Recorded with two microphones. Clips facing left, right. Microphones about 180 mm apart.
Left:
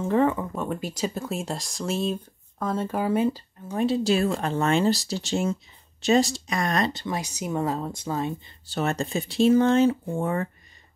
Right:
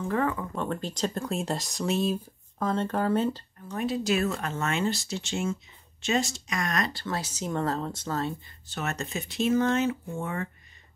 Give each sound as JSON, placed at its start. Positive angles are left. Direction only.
{"t": 0.1, "sound": "speech", "side_deg": 25}
{"t": 0.6, "sound": "speech", "side_deg": 10}
{"t": 3.6, "sound": "speech", "side_deg": 30}
{"t": 8.6, "sound": "speech", "side_deg": 30}